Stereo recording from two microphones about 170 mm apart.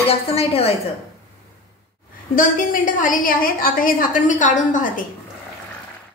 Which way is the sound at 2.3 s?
50° left (ahead or behind).